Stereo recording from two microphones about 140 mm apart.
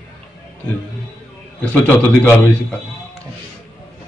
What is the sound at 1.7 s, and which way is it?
Speech, 10° left (ahead or behind).